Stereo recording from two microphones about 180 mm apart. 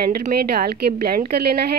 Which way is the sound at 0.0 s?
55° right (ahead or behind).